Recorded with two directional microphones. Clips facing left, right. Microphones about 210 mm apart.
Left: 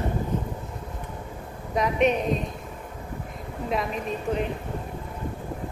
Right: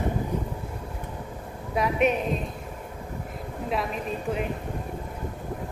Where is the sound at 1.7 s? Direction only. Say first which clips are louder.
Left 1 dB; 5° right (ahead or behind).